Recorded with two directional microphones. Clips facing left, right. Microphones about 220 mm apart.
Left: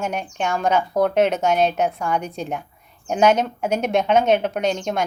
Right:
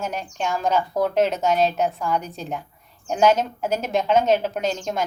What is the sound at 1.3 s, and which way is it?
Speech, centre (ahead or behind).